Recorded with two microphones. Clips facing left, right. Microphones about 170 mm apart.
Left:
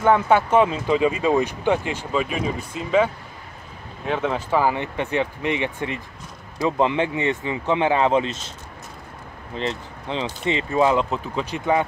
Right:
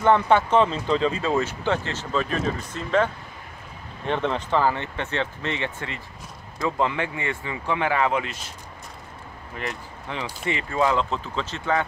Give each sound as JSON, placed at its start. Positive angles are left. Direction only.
{"t": 0.0, "sound": "speech", "side_deg": 5}
{"t": 9.6, "sound": "speech", "side_deg": 20}